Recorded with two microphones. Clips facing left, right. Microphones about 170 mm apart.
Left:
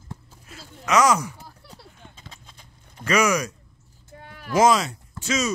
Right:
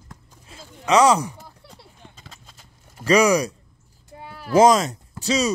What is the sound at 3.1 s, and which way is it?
Speech, 35° right (ahead or behind).